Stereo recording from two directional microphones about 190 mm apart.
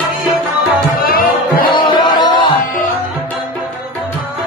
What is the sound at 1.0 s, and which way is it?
Music, 50° left (ahead or behind).